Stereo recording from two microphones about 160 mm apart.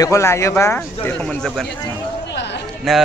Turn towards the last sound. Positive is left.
turn(degrees=0)  # may be behind; listen again after turning